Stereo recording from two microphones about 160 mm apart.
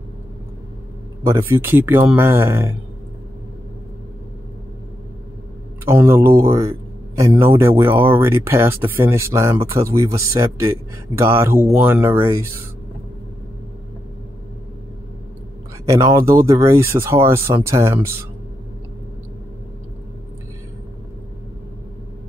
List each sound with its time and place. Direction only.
1.2 s speech: 15° right (ahead or behind)
5.9 s speech: 15° right (ahead or behind)
15.8 s speech: 20° right (ahead or behind)